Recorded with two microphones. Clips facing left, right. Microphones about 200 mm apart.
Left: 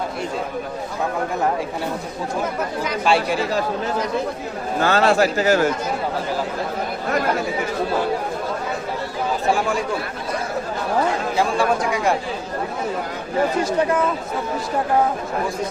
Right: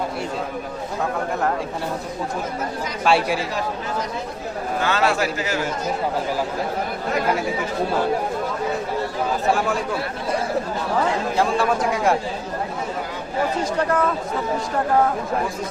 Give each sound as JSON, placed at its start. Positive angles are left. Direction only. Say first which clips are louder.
{"t": 3.0, "sound": "a man's voice", "louder": "right 1 dB", "side_deg": -5}
{"t": 4.8, "sound": "a man's voice", "louder": "left 5 dB", "side_deg": 40}
{"t": 11.3, "sound": "a man's voice", "louder": "left 1 dB", "side_deg": -5}
{"t": 13.7, "sound": "a man's voice", "louder": "left 2 dB", "side_deg": 5}